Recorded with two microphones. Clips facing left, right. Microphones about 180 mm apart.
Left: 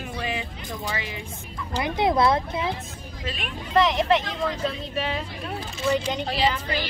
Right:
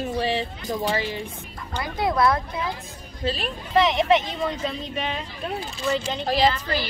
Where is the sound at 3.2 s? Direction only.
30° right (ahead or behind).